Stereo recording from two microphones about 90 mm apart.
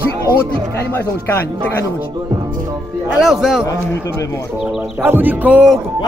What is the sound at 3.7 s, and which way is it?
Speech, 35° left (ahead or behind).